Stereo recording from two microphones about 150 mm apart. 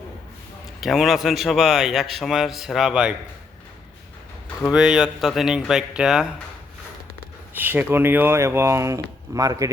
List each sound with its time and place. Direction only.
0.8 s a man's voice: centre (ahead or behind)
4.7 s a man's voice: 5° right (ahead or behind)
7.5 s speech: 10° right (ahead or behind)